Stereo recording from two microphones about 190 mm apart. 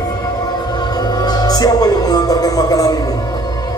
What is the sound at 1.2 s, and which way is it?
Speech, 20° left (ahead or behind).